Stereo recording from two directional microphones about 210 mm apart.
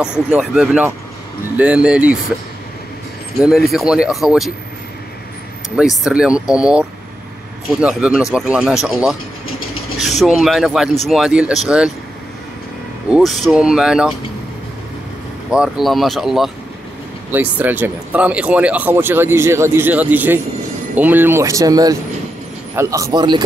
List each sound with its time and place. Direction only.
0.3 s speech: 5° right (ahead or behind)
3.3 s speech: centre (ahead or behind)
5.8 s speech: 5° right (ahead or behind)
9.5 s vehicle: 75° left (ahead or behind)
10.2 s speech: centre (ahead or behind)
13.1 s speech: centre (ahead or behind)
15.5 s speech: centre (ahead or behind); by 23.4 s 20° right (ahead or behind)